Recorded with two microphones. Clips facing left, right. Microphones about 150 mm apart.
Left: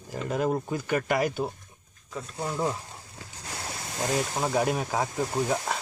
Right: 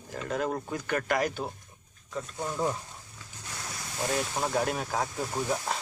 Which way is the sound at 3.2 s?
70° left (ahead or behind).